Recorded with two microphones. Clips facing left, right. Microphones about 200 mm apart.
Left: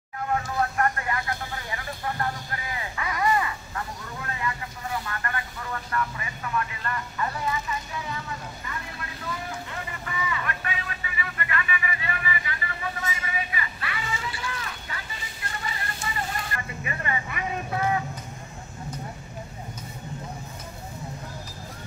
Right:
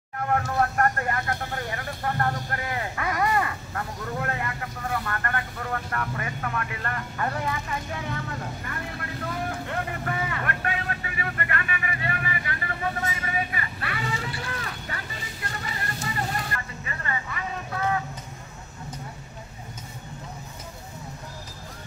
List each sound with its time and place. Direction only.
0.2 s vehicle: 55° right (ahead or behind)
16.8 s speech: 15° left (ahead or behind)